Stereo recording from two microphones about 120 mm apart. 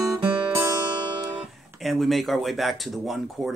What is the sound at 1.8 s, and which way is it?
Speech, centre (ahead or behind).